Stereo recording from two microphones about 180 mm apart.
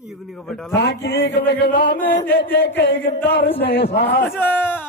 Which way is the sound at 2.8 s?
80° left.